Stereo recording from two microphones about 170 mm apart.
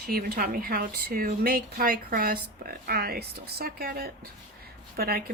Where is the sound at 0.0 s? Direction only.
60° right (ahead or behind).